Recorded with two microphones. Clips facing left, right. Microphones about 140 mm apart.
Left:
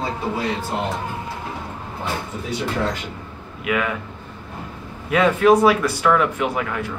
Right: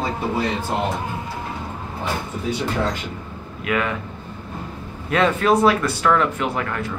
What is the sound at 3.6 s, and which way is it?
Speech, 5° left (ahead or behind).